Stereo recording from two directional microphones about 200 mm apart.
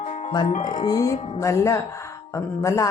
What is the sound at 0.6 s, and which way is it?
Speech, 20° left (ahead or behind).